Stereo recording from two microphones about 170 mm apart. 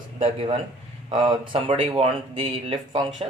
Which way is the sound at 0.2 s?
35° right (ahead or behind).